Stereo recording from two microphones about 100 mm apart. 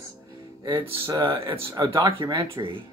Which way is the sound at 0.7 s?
55° right (ahead or behind).